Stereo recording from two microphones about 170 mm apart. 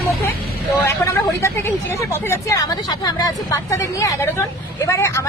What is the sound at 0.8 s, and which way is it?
Speech, 15° left (ahead or behind).